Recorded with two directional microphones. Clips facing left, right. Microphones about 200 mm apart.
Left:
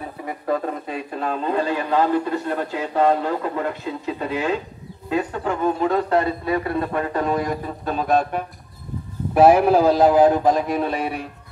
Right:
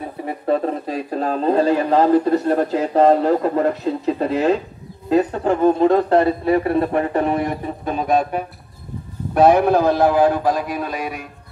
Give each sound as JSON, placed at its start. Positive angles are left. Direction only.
{"t": 0.2, "sound": "speech", "side_deg": -30}
{"t": 9.3, "sound": "a man's voice", "side_deg": 5}